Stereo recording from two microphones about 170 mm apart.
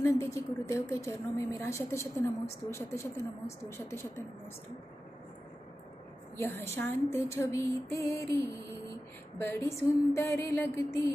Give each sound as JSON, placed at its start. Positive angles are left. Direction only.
{"t": 0.0, "sound": "a woman's voice", "side_deg": 15}
{"t": 6.3, "sound": "a woman's voice", "side_deg": 15}